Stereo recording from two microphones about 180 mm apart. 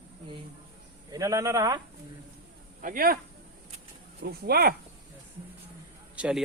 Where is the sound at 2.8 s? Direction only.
50° right (ahead or behind).